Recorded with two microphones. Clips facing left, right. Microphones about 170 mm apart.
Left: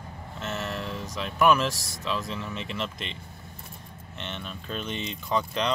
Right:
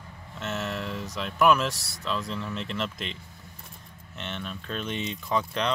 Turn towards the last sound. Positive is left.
turn(degrees=0)  # may be behind; listen again after turning